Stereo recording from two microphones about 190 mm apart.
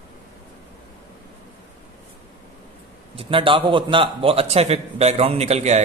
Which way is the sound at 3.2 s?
30° right (ahead or behind).